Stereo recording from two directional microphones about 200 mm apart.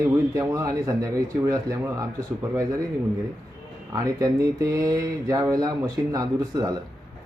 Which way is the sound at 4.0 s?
15° right (ahead or behind).